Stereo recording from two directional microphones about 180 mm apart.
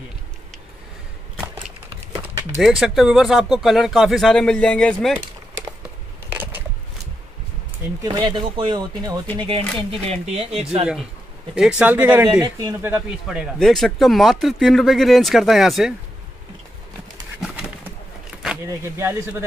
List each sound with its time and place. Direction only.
2.6 s speech: centre (ahead or behind)
8.0 s speech: 25° right (ahead or behind)
11.5 s speech: 5° right (ahead or behind)
12.4 s speech: 20° right (ahead or behind); by 15.9 s centre (ahead or behind)
17.4 s pigeon: 5° right (ahead or behind)
18.3 s a sound: 5° right (ahead or behind)
18.9 s speech: 15° right (ahead or behind)